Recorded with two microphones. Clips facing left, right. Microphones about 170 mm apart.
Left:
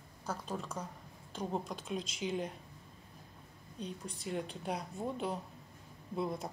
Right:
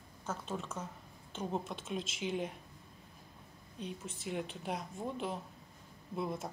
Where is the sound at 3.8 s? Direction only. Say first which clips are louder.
Even; 5° right (ahead or behind).